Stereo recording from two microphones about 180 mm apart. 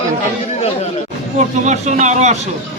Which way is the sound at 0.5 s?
35° left (ahead or behind).